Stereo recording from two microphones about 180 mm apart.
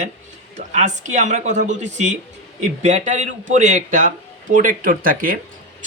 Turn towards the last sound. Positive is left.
turn(degrees=-50)  # may be behind; listen again after turning